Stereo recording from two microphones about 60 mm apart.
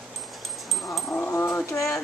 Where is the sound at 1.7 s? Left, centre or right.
Left.